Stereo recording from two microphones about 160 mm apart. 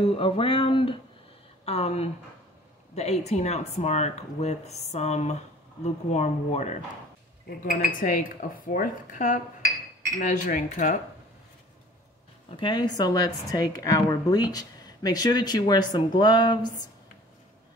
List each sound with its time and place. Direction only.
0.0 s a sound: 35° left (ahead or behind)
2.9 s speech: 45° left (ahead or behind)
7.4 s speech: 60° left (ahead or behind)
12.4 s a woman's voice: 30° left (ahead or behind)